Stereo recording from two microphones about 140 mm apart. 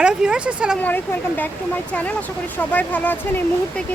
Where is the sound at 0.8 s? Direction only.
15° left (ahead or behind).